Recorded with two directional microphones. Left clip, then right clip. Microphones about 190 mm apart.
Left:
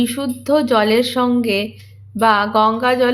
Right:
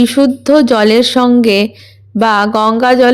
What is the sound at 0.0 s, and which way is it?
A woman's voice, 35° right (ahead or behind).